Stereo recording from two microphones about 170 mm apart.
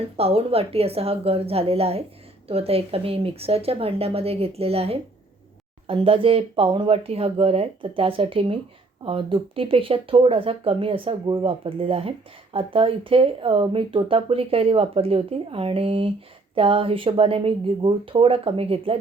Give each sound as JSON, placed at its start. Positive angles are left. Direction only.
{"t": 0.2, "sound": "speech", "side_deg": -35}